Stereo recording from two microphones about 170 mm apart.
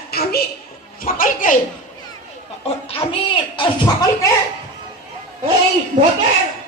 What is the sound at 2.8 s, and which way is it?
Speech, 30° left (ahead or behind).